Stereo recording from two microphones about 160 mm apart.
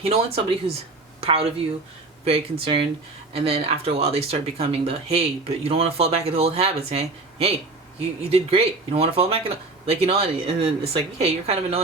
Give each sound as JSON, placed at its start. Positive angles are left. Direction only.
{"t": 0.0, "sound": "speech", "side_deg": -40}